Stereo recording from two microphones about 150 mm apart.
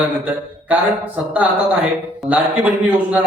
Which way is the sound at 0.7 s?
10° right (ahead or behind).